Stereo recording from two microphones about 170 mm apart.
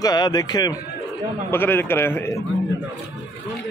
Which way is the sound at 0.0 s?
25° left (ahead or behind).